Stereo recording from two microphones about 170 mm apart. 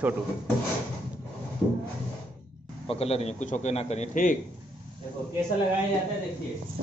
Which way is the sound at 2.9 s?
35° left (ahead or behind).